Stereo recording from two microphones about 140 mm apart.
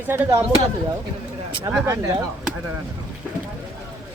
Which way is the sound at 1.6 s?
10° right (ahead or behind).